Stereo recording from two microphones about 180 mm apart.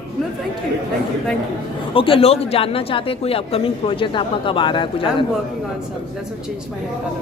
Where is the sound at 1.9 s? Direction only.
30° left (ahead or behind).